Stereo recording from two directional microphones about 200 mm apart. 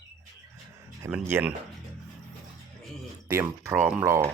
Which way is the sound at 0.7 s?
15° right (ahead or behind).